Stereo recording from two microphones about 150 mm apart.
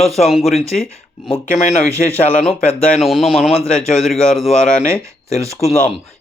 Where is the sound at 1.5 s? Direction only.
45° left (ahead or behind).